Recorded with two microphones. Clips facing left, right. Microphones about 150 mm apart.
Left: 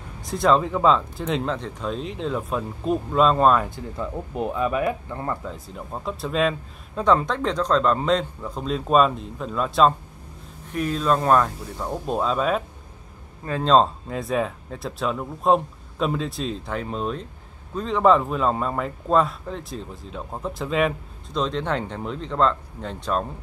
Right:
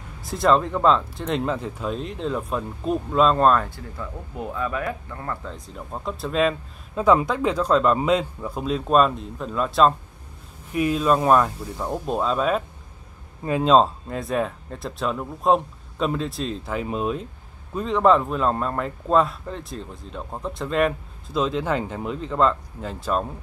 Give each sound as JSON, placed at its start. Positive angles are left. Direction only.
{"t": 0.2, "sound": "speech", "side_deg": 0}
{"t": 3.6, "sound": "speech", "side_deg": 20}
{"t": 5.4, "sound": "speech", "side_deg": 5}
{"t": 13.4, "sound": "speech", "side_deg": -10}